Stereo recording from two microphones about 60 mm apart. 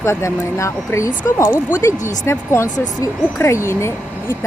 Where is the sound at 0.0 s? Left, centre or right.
Left.